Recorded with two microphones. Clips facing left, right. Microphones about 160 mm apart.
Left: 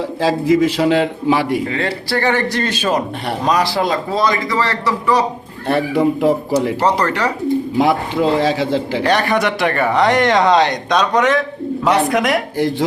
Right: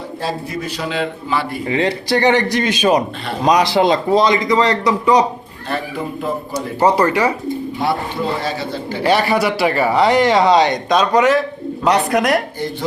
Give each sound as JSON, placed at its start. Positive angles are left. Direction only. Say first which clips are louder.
{"t": 0.2, "sound": "a man's voice", "louder": "left 11 dB", "side_deg": 90}
{"t": 1.6, "sound": "a man's voice", "louder": "right 3 dB", "side_deg": -20}
{"t": 5.6, "sound": "a man's voice", "louder": "left 8 dB", "side_deg": 70}
{"t": 6.8, "sound": "a man's voice", "louder": "right 2 dB", "side_deg": -10}
{"t": 7.8, "sound": "a man's voice", "louder": "left 5 dB", "side_deg": 90}
{"t": 9.0, "sound": "speech", "louder": "right 3 dB", "side_deg": -5}